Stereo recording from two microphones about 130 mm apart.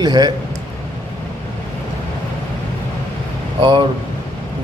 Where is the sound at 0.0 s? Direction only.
30° right (ahead or behind).